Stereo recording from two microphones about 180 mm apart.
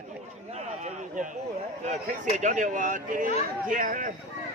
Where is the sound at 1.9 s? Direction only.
40° right (ahead or behind).